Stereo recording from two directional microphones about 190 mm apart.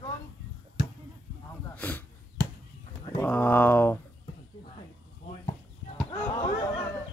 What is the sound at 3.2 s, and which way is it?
Speech, 10° left (ahead or behind).